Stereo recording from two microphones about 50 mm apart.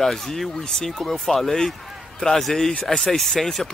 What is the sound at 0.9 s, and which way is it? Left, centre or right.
Speech, centre.